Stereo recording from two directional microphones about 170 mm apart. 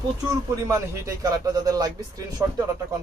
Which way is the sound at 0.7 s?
20° right (ahead or behind).